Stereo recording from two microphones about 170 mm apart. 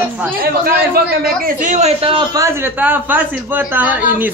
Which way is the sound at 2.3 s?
15° right (ahead or behind).